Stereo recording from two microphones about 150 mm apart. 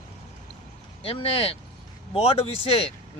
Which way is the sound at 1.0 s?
40° left (ahead or behind).